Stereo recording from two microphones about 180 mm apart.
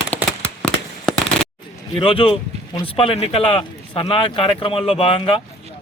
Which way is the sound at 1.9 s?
30° left (ahead or behind).